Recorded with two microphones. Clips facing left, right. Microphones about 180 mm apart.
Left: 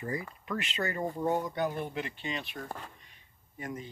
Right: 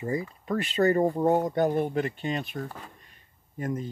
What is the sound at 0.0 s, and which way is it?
Speech, 30° right (ahead or behind).